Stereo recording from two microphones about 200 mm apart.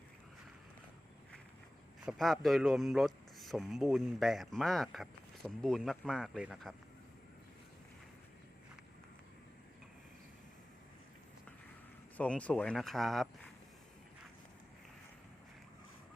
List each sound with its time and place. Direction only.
2.0 s speech: centre (ahead or behind)
12.1 s speech: 5° left (ahead or behind)